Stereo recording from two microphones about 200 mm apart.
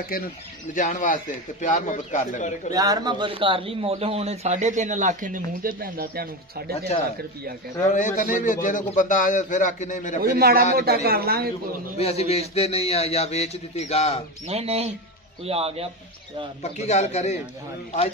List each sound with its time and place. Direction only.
0.1 s a man's voice: 45° left (ahead or behind)
2.7 s a man's voice: 20° right (ahead or behind); by 6.9 s 50° right (ahead or behind)
7.9 s a man's voice: 40° left (ahead or behind)
10.2 s speech: 50° right (ahead or behind)
12.0 s a man's voice: 30° left (ahead or behind)
14.5 s a man's voice: 30° right (ahead or behind)
16.6 s a man's voice: 35° left (ahead or behind)